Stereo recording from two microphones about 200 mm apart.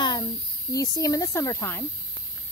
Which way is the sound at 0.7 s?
15° left (ahead or behind).